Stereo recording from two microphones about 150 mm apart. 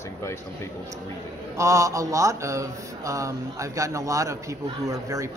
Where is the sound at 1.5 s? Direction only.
20° right (ahead or behind).